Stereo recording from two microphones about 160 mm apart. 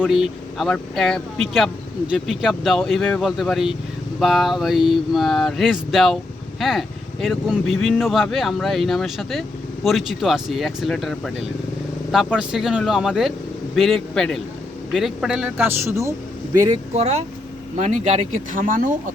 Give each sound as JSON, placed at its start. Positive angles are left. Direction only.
{"t": 0.1, "sound": "speech", "side_deg": 0}
{"t": 16.9, "sound": "speech", "side_deg": -40}